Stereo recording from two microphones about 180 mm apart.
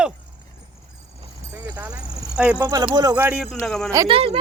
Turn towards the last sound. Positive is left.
turn(degrees=-30)  # may be behind; listen again after turning